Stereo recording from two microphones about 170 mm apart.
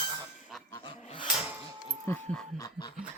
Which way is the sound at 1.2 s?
5° right (ahead or behind).